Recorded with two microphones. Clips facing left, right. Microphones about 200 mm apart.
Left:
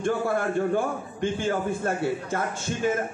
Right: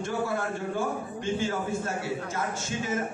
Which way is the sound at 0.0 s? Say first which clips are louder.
Left 5 dB; 55° left (ahead or behind).